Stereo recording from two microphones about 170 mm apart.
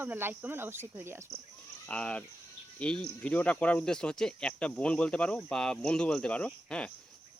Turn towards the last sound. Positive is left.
turn(degrees=5)  # may be behind; listen again after turning